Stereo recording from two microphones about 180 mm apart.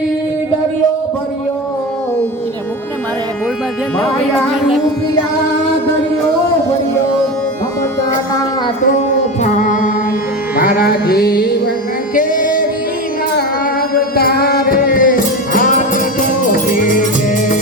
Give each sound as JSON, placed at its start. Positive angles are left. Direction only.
{"t": 8.9, "sound": "music", "side_deg": 40}
{"t": 13.9, "sound": "music", "side_deg": 55}